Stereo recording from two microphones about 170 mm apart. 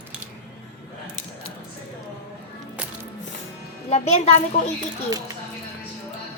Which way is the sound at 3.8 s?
40° left (ahead or behind).